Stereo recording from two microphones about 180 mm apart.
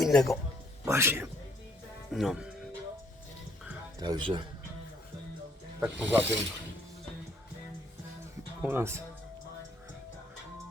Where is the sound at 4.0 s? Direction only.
25° right (ahead or behind).